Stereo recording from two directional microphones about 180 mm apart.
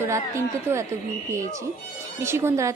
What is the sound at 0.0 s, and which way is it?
A woman's voice, 15° right (ahead or behind).